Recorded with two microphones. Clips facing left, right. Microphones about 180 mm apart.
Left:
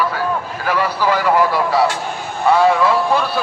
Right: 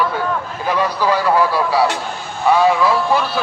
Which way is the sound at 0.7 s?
15° right (ahead or behind).